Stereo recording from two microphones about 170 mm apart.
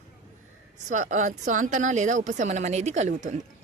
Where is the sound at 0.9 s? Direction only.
45° right (ahead or behind).